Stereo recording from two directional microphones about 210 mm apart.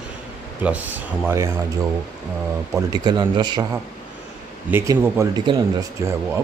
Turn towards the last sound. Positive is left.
turn(degrees=-20)  # may be behind; listen again after turning